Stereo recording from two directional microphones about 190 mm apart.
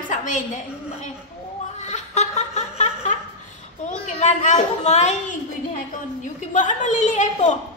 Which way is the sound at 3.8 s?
40° left (ahead or behind).